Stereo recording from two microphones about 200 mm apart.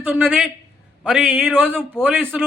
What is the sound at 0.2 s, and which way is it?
A man's voice, centre (ahead or behind).